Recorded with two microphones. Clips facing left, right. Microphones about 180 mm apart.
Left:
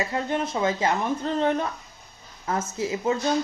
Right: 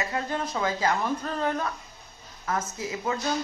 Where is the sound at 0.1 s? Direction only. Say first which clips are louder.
Left 3 dB; 25° left (ahead or behind).